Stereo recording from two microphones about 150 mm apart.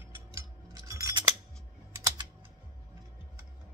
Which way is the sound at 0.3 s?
20° right (ahead or behind).